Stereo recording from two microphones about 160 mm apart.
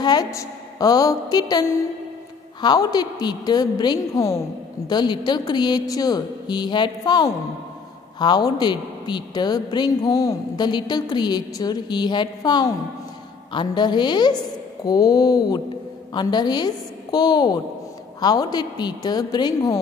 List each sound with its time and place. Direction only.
0.0 s a woman's voice: 25° left (ahead or behind)